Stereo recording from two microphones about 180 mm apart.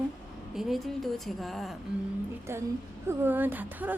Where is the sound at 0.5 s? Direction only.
Centre (ahead or behind).